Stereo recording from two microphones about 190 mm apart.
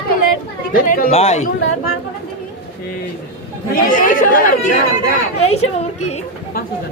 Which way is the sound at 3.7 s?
45° left (ahead or behind).